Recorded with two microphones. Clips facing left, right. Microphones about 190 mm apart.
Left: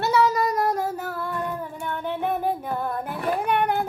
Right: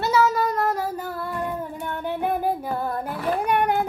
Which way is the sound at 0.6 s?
5° left (ahead or behind).